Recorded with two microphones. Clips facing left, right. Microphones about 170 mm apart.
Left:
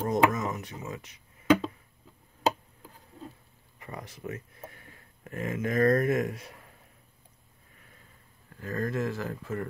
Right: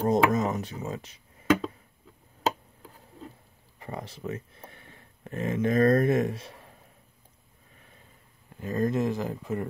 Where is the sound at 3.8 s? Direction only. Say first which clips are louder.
Right 4 dB; 30° right (ahead or behind).